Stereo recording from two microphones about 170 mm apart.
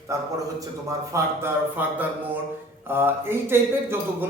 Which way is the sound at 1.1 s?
15° right (ahead or behind).